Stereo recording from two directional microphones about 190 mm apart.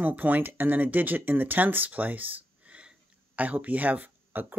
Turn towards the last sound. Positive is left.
turn(degrees=-10)  # may be behind; listen again after turning